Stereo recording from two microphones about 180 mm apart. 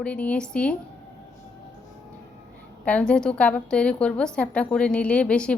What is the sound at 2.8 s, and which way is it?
A woman's voice, 5° left (ahead or behind).